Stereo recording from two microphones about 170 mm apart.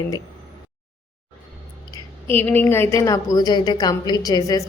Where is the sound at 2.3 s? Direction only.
10° left (ahead or behind).